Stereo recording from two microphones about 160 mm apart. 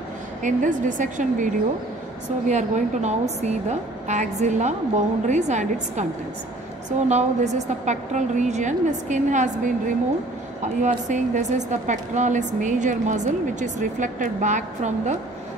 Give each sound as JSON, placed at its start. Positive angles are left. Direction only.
{"t": 0.4, "sound": "a woman's voice", "side_deg": -50}
{"t": 7.1, "sound": "a woman's voice", "side_deg": -45}